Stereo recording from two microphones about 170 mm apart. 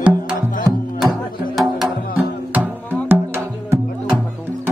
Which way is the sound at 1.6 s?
5° right (ahead or behind).